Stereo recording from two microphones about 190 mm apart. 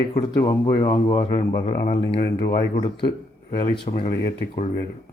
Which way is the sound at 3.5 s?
30° left (ahead or behind).